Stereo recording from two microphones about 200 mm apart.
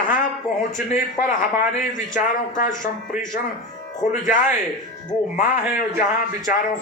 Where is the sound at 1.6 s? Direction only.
40° left (ahead or behind).